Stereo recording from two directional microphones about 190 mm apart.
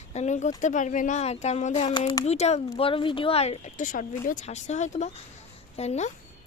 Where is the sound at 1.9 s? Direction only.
25° left (ahead or behind).